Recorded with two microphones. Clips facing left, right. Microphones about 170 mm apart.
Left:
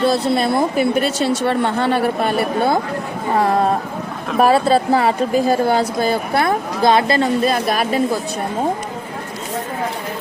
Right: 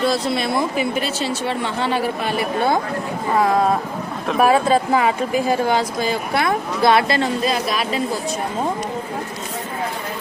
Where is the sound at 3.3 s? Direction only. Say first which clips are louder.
Left 1 dB; 35° left (ahead or behind).